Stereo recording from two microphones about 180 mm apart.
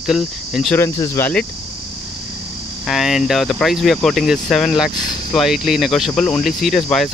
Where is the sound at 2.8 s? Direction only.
Centre (ahead or behind).